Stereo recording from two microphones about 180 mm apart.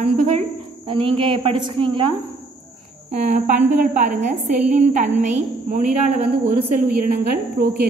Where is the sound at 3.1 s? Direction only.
45° right (ahead or behind).